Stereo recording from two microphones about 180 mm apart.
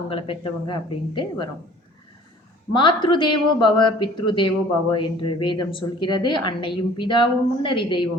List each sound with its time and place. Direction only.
0.1 s a woman's voice: 30° left (ahead or behind)
2.7 s a woman's voice: 25° left (ahead or behind)